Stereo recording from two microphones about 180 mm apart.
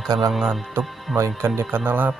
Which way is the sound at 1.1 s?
10° right (ahead or behind).